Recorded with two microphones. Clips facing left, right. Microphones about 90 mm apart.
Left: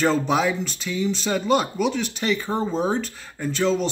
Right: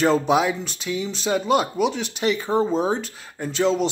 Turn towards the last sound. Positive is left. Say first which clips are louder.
# right 1 dB
turn(degrees=-20)  # may be behind; listen again after turning